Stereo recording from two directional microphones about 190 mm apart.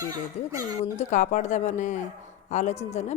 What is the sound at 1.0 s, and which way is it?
A woman's voice, 40° left (ahead or behind).